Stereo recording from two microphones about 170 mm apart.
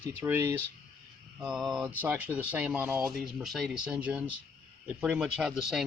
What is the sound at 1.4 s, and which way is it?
Speech, 5° right (ahead or behind).